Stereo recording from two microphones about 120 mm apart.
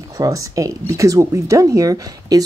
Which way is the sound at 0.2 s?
30° right (ahead or behind).